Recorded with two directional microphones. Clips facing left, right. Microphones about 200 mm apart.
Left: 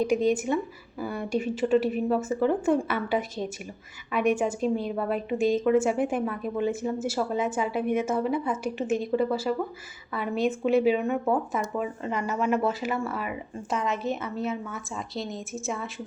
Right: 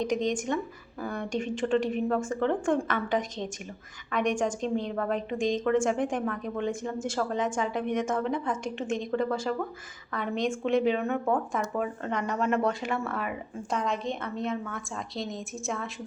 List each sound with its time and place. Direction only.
0.0 s a woman's voice: 10° left (ahead or behind)